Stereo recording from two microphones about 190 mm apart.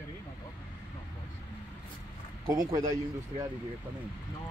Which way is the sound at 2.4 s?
20° right (ahead or behind).